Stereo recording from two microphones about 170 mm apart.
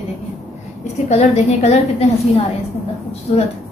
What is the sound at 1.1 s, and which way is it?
Speech, 40° left (ahead or behind).